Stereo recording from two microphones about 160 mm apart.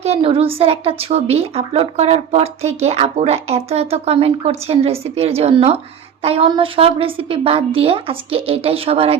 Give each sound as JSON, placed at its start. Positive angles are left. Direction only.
{"t": 0.0, "sound": "a woman's voice", "side_deg": -35}